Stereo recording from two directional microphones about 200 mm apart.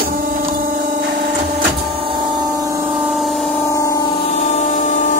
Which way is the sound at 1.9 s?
25° right (ahead or behind).